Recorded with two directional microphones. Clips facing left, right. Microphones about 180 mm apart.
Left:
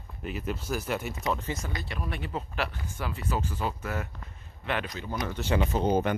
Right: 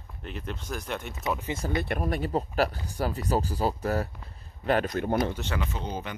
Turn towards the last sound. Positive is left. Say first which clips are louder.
# left 9 dB
turn(degrees=50)  # may be behind; listen again after turning